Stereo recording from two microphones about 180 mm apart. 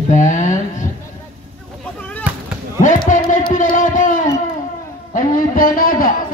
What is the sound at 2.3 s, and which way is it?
Basketball bounce, 10° right (ahead or behind).